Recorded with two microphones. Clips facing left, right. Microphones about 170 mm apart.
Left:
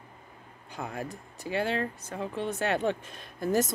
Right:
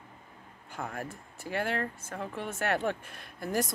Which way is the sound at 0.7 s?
15° left (ahead or behind).